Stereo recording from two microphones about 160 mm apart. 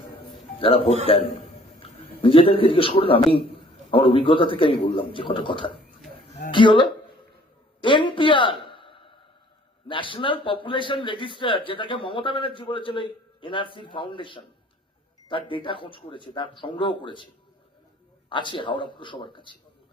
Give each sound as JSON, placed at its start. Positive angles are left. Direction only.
{"t": 0.6, "sound": "a man's voice", "side_deg": 35}
{"t": 7.8, "sound": "a sound", "side_deg": 30}
{"t": 9.9, "sound": "a man's voice", "side_deg": 30}
{"t": 18.3, "sound": "a man's voice", "side_deg": 30}